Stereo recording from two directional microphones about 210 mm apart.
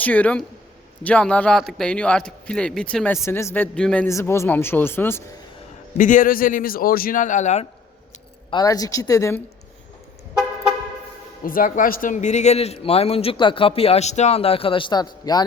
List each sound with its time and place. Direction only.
0.0 s a man's voice: 5° left (ahead or behind)
6.0 s speech: 40° left (ahead or behind)
8.4 s a man's voice: 20° left (ahead or behind)
11.4 s a man's voice: 40° left (ahead or behind); by 15.4 s 20° left (ahead or behind)